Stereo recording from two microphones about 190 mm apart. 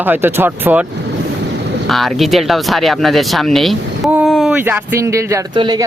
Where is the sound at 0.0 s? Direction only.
10° right (ahead or behind).